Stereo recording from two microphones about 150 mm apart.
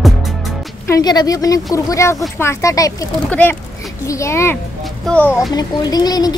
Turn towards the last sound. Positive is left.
turn(degrees=25)  # may be behind; listen again after turning